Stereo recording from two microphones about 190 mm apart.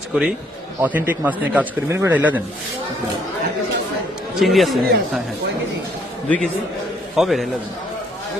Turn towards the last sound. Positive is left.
turn(degrees=0)  # may be behind; listen again after turning